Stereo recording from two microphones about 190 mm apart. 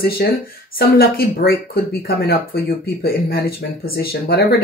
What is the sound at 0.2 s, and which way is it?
Speech, 50° left (ahead or behind).